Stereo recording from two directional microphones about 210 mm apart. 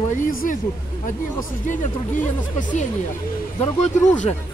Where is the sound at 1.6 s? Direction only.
40° left (ahead or behind).